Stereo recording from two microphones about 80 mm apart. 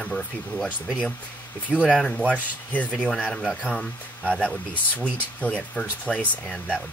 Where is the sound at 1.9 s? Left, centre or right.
Centre.